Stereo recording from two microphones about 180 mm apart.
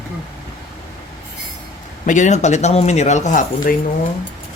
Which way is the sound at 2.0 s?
45° left (ahead or behind).